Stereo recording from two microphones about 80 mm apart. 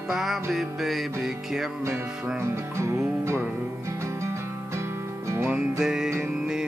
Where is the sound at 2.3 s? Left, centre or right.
Right.